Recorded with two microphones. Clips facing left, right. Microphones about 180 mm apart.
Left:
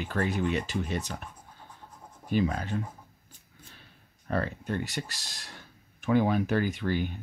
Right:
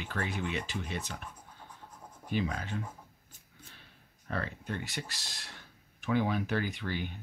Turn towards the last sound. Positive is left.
turn(degrees=45)  # may be behind; listen again after turning